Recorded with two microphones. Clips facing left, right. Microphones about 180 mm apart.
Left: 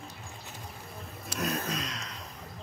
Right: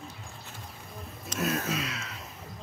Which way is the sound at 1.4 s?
5° right (ahead or behind).